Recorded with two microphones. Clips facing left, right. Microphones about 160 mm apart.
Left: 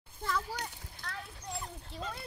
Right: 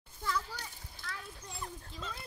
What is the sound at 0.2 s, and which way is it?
Children playing, 55° left (ahead or behind).